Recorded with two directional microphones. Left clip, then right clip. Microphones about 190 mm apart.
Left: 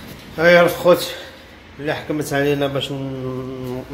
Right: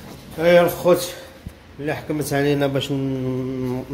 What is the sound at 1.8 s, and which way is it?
Speech, 20° right (ahead or behind).